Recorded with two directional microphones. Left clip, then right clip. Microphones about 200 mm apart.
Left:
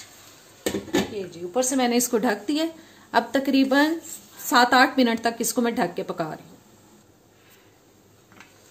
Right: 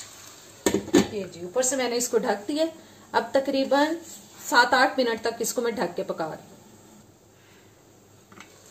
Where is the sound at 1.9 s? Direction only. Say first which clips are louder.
Left 2 dB; 60° left (ahead or behind).